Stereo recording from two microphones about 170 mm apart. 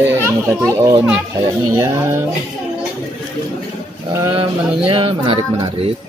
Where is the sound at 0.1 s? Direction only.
15° right (ahead or behind).